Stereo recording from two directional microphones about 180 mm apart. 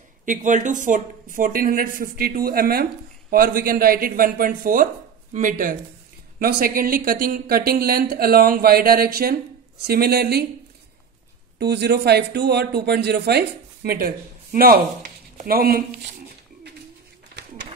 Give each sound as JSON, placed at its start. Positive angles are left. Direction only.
{"t": 0.2, "sound": "speech", "side_deg": -45}
{"t": 11.5, "sound": "speech", "side_deg": -65}